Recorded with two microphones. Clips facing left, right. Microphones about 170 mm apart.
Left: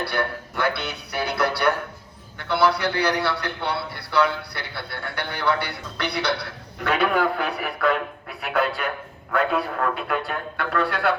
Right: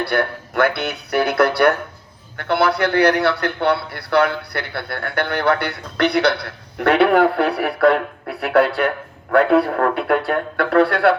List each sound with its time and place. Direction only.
0.1 s a man's voice: 55° right (ahead or behind)
6.7 s a man's voice: 65° right (ahead or behind)